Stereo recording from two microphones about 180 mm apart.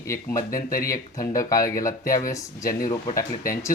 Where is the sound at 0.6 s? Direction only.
55° left (ahead or behind).